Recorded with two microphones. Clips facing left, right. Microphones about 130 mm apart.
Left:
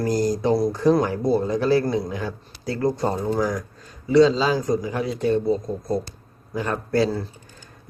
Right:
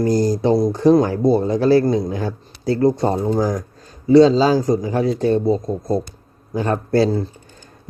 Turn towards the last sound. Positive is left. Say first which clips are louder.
# right 5 dB
turn(degrees=-30)  # may be behind; listen again after turning